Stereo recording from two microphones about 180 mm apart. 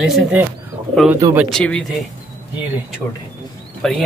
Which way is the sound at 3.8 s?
5° left (ahead or behind).